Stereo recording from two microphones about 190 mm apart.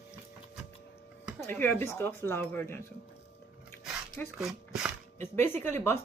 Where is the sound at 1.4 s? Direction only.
10° left (ahead or behind).